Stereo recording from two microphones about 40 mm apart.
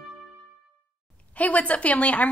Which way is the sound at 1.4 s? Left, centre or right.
Left.